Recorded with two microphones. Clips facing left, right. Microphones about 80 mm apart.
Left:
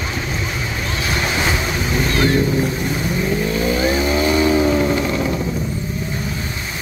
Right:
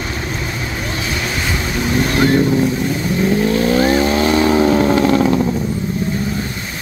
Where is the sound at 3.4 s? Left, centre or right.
Right.